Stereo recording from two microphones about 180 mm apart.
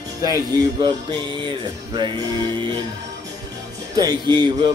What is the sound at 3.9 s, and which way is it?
Speech, 25° right (ahead or behind).